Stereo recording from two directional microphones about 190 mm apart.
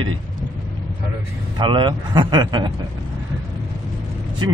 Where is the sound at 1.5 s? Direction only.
25° right (ahead or behind).